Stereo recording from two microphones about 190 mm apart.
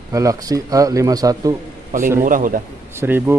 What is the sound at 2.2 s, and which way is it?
Speech, 45° right (ahead or behind).